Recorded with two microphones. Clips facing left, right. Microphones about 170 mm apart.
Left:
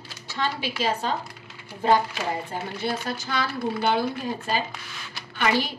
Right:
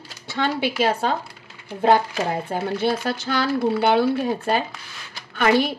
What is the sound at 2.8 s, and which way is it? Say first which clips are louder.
Speech: right 6 dB; 70° right (ahead or behind).